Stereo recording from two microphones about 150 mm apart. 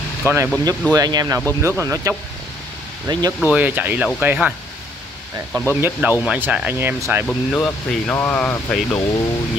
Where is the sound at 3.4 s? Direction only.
10° right (ahead or behind).